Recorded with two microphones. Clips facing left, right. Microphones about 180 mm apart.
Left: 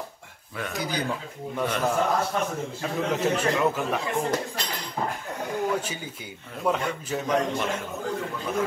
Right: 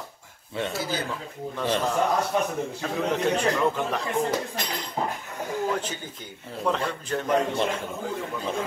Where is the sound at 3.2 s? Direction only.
5° left (ahead or behind).